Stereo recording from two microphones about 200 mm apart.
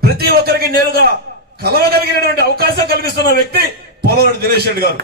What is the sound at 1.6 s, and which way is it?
A man's voice, 50° right (ahead or behind).